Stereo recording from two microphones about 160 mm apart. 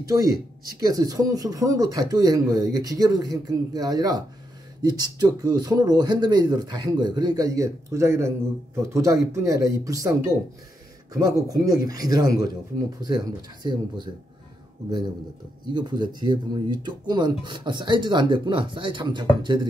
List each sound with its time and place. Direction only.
0.1 s speech: 20° right (ahead or behind)
11.1 s speech: 20° right (ahead or behind)
15.7 s speech: 25° right (ahead or behind)